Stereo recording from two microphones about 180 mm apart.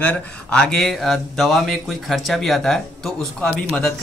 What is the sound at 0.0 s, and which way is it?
Speech, 10° left (ahead or behind).